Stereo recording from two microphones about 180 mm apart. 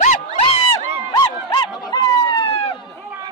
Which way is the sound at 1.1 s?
25° left (ahead or behind).